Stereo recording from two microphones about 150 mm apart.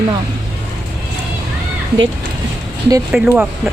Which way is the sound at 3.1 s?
5° right (ahead or behind).